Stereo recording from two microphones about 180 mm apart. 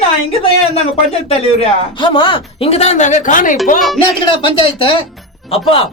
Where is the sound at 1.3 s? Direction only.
30° left (ahead or behind); by 3.5 s 45° left (ahead or behind).